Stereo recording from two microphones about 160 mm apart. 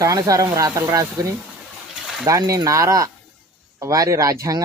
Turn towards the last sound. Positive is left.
turn(degrees=-20)  # may be behind; listen again after turning